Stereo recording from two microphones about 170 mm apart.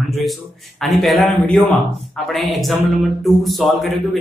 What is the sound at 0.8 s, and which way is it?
A man's voice, centre (ahead or behind).